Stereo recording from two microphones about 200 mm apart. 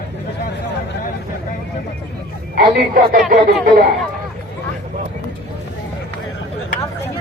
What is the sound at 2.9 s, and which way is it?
Speech, 45° right (ahead or behind).